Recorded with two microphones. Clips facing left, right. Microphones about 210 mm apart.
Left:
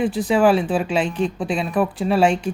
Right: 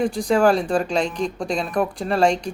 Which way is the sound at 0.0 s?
5° left (ahead or behind).